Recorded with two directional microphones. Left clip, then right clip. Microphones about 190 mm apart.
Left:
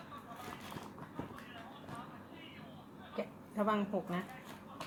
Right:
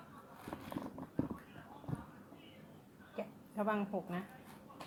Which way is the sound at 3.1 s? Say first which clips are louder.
Left 3 dB; 15° right (ahead or behind).